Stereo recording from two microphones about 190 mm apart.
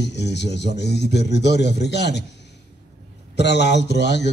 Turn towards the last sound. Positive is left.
turn(degrees=65)  # may be behind; listen again after turning